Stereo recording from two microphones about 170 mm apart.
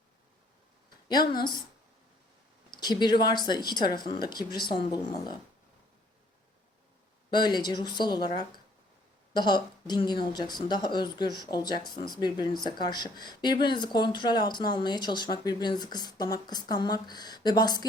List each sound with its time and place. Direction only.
1.0 s a woman's voice: 25° left (ahead or behind)
2.6 s speech: 25° left (ahead or behind)
7.3 s speech: 25° left (ahead or behind)
9.3 s speech: 25° left (ahead or behind)